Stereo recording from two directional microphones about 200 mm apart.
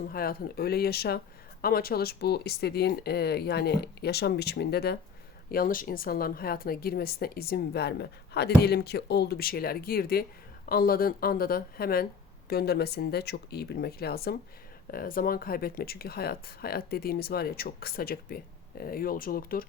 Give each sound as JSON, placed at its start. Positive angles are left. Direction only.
{"t": 0.0, "sound": "a woman's voice", "side_deg": 45}